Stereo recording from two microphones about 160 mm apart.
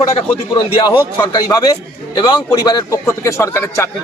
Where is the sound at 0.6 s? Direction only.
30° left (ahead or behind).